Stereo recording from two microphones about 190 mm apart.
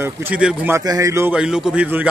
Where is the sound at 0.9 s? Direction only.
15° right (ahead or behind).